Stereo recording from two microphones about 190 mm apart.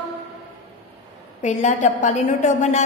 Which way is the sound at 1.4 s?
40° left (ahead or behind).